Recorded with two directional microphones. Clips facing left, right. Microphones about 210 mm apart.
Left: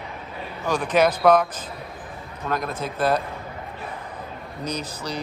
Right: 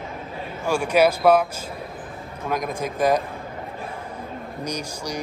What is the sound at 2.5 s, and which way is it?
Speech, 15° right (ahead or behind).